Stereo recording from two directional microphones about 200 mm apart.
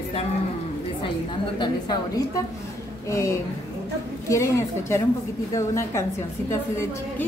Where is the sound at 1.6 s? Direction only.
20° left (ahead or behind).